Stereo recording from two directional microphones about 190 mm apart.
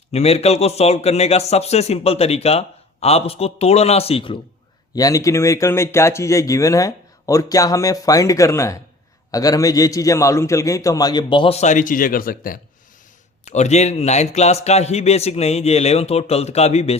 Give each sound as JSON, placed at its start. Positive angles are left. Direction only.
{"t": 0.1, "sound": "a man's voice", "side_deg": 35}
{"t": 4.9, "sound": "a man's voice", "side_deg": 15}
{"t": 13.4, "sound": "a man's voice", "side_deg": 35}